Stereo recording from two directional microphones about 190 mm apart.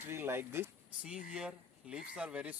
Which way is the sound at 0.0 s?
10° right (ahead or behind).